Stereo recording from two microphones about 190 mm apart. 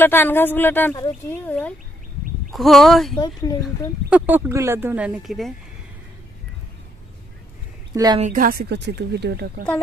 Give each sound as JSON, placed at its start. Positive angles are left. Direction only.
{"t": 0.0, "sound": "speech", "side_deg": 10}
{"t": 4.1, "sound": "speech", "side_deg": -10}
{"t": 7.9, "sound": "a woman's voice", "side_deg": -20}
{"t": 8.2, "sound": "a woman's voice", "side_deg": -45}